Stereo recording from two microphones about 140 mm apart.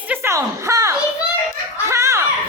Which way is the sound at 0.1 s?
20° right (ahead or behind).